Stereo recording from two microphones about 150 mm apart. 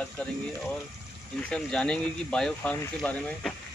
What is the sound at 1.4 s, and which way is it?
Speech, 5° left (ahead or behind).